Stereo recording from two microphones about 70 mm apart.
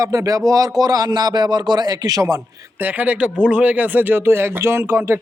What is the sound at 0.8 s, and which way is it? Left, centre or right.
Speech, right.